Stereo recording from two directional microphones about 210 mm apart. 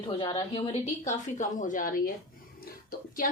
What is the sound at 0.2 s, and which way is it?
A woman's voice, 20° left (ahead or behind).